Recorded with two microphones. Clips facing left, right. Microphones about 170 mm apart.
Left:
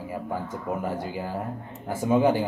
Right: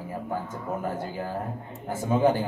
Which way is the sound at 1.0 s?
10° left (ahead or behind).